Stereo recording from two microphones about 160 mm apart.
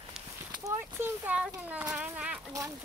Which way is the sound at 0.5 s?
20° right (ahead or behind).